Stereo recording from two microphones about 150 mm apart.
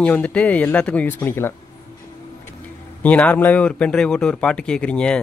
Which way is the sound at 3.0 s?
10° left (ahead or behind).